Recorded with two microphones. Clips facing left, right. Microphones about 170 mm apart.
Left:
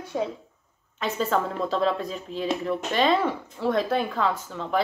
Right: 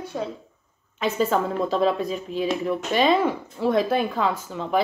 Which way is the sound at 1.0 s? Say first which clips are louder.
Right 3 dB; 10° right (ahead or behind).